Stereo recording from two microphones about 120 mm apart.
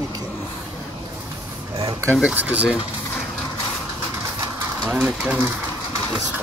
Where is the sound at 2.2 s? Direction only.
10° right (ahead or behind).